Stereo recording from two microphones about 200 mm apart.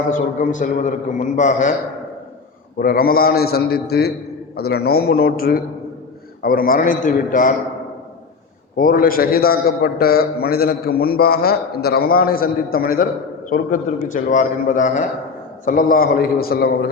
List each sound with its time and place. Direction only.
0.1 s a man's voice: 40° left (ahead or behind)
2.7 s a man's voice: 50° left (ahead or behind)
8.7 s a man's voice: 45° left (ahead or behind)